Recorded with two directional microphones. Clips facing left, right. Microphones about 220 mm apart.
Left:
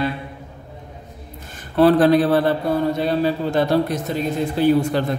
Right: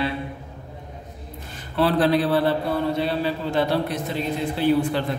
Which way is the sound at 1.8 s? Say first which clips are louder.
Left 6 dB; 45° left (ahead or behind).